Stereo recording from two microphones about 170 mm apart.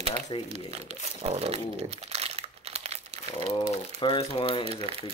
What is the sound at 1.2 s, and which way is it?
Speech, 35° right (ahead or behind).